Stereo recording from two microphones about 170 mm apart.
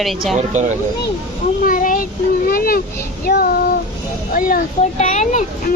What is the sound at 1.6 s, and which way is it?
A child's voice, 55° left (ahead or behind).